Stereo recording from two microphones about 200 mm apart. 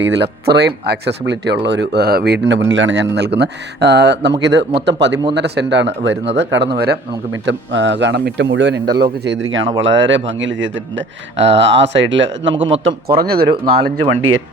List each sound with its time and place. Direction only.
0.0 s speech: 60° right (ahead or behind)
7.4 s a man's voice: 65° right (ahead or behind)
13.1 s speech: 50° right (ahead or behind)